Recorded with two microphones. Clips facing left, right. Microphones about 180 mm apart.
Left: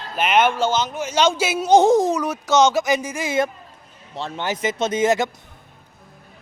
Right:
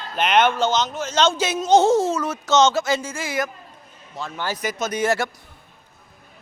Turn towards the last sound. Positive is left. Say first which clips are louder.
# left 3 dB
turn(degrees=20)  # may be behind; listen again after turning